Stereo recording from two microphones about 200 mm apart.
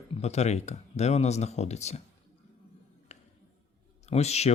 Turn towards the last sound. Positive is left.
turn(degrees=30)  # may be behind; listen again after turning